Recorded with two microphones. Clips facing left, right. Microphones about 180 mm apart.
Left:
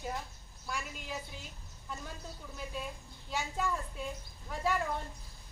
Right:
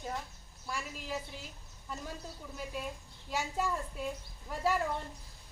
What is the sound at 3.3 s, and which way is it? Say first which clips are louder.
Speech: right 1 dB; 5° right (ahead or behind).